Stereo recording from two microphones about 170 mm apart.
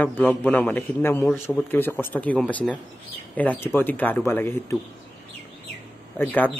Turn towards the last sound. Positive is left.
turn(degrees=10)  # may be behind; listen again after turning